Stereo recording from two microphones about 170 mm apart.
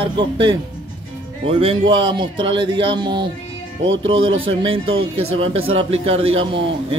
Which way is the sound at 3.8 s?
90° right.